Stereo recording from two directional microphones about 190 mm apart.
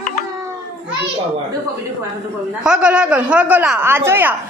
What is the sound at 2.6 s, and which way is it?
A man's voice, 5° right (ahead or behind).